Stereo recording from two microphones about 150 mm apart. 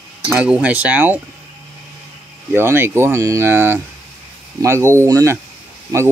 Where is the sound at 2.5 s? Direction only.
15° right (ahead or behind).